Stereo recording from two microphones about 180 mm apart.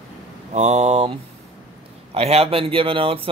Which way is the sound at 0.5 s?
40° right (ahead or behind).